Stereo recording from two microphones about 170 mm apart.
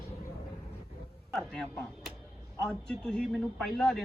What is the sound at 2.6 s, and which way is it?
Speech, 5° left (ahead or behind).